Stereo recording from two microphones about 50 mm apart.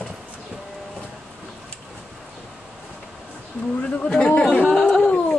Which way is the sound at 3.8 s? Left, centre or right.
Left.